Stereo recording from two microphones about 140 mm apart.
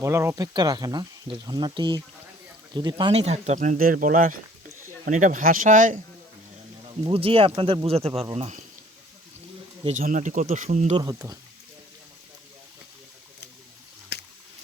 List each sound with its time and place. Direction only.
0.0 s speech: 20° right (ahead or behind)
3.1 s speech: 45° right (ahead or behind); by 4.4 s 80° right
5.0 s speech: 65° right (ahead or behind)
7.0 s speech: 40° right (ahead or behind)
9.9 s speech: 65° right (ahead or behind)
10.9 s speech: 20° right (ahead or behind)